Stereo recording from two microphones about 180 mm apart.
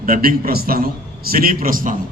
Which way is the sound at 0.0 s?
55° right (ahead or behind).